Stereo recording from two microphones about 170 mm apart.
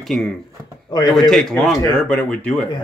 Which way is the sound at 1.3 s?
Centre (ahead or behind).